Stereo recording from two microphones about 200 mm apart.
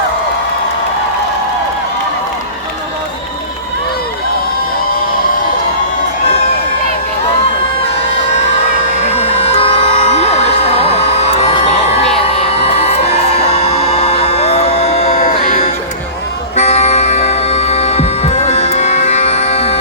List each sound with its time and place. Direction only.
9.0 s music: 30° left (ahead or behind)
12.4 s a sound: 30° left (ahead or behind)
13.7 s music: 30° left (ahead or behind)